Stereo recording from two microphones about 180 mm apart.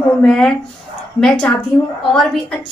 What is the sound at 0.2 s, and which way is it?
Speech, 5° left (ahead or behind).